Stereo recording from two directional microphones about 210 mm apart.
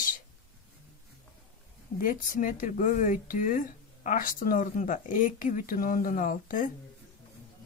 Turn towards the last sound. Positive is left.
turn(degrees=40)  # may be behind; listen again after turning